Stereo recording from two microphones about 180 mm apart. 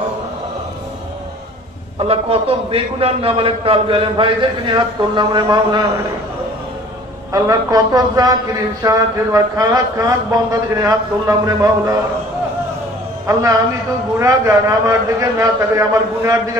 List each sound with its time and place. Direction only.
2.0 s a man's voice: 35° right (ahead or behind)
7.3 s a man's voice: 20° right (ahead or behind)
13.3 s a man's voice: 15° right (ahead or behind)